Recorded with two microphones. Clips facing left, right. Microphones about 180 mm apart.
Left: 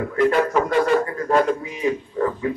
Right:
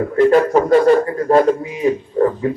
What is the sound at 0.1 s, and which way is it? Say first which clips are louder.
Speech: right 6 dB; 35° right (ahead or behind).